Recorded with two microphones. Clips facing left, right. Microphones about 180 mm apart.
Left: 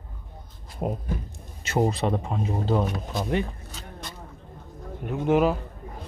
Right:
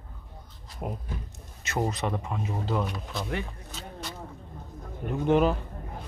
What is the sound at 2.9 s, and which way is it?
Speech, 45° left (ahead or behind).